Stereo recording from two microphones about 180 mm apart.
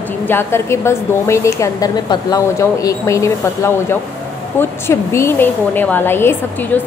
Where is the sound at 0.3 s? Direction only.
15° left (ahead or behind).